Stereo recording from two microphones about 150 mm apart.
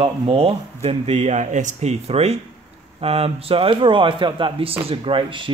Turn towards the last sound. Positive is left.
turn(degrees=-35)  # may be behind; listen again after turning